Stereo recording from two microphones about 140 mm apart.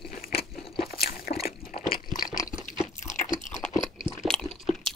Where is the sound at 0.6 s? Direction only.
90° left.